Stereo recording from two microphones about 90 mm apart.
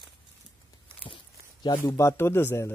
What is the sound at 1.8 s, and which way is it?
Speech, 35° left (ahead or behind).